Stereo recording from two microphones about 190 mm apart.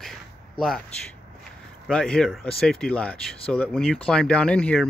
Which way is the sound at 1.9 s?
5° left (ahead or behind).